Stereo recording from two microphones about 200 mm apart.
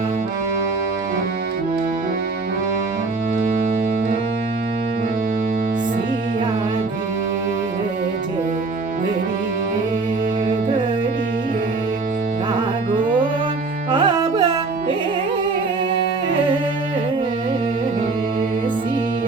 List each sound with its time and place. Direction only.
13.9 s carnatic music: 25° right (ahead or behind)